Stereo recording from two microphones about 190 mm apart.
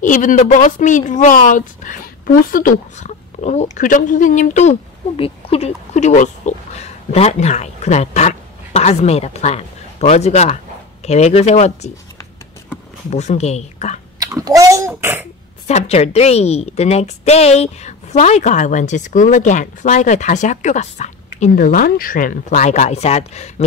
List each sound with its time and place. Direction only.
0.0 s a woman's voice: 40° left (ahead or behind)
13.1 s a woman's voice: 35° left (ahead or behind)
14.2 s a child's voice: 20° right (ahead or behind)
15.6 s a woman's voice: 35° left (ahead or behind)